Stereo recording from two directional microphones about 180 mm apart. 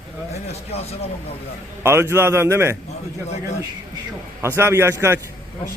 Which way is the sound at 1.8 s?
15° right (ahead or behind).